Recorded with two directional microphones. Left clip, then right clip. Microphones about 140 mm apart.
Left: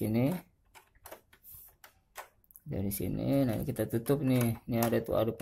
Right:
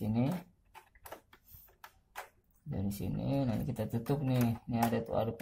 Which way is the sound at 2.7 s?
50° left (ahead or behind).